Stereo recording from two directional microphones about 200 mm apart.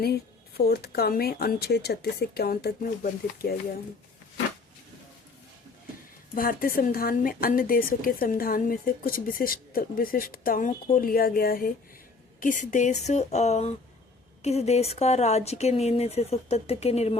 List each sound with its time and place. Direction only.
0.0 s speech: 50° left (ahead or behind)
6.3 s speech: 45° left (ahead or behind)